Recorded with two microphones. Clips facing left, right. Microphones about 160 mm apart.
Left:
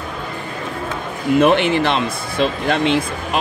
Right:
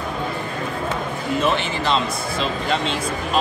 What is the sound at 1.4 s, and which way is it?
Speech, 60° left (ahead or behind).